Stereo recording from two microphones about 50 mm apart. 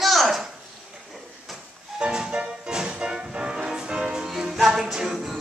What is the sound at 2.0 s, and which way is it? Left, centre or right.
Music, centre.